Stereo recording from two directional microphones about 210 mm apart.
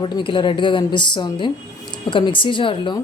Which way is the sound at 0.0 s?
25° left (ahead or behind).